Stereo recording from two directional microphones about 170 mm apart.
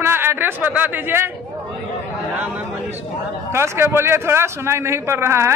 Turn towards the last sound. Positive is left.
turn(degrees=-15)  # may be behind; listen again after turning